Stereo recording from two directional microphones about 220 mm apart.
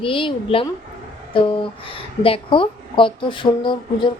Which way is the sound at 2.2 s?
25° left (ahead or behind).